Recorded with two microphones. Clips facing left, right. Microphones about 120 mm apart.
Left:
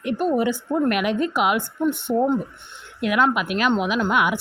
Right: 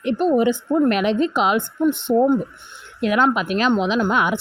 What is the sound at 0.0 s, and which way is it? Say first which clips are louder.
A woman's voice: right 4 dB; 25° right (ahead or behind).